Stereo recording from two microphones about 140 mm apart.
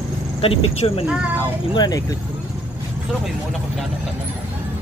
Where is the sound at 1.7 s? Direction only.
30° left (ahead or behind).